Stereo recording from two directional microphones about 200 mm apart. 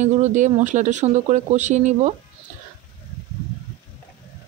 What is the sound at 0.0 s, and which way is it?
Speech, 35° right (ahead or behind).